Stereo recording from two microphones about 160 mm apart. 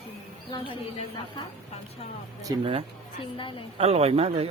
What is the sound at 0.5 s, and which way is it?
Speech, 35° left (ahead or behind).